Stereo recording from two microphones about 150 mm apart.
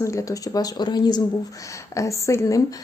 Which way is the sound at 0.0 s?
20° left (ahead or behind).